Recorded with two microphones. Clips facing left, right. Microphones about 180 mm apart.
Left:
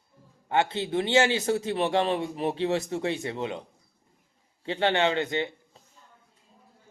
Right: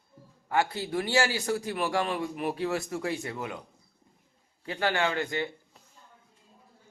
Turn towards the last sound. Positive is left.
turn(degrees=20)  # may be behind; listen again after turning